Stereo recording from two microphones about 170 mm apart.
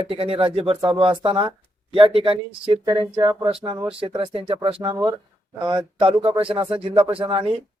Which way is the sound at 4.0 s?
30° right (ahead or behind).